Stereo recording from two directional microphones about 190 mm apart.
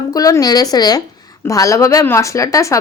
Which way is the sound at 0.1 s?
20° left (ahead or behind).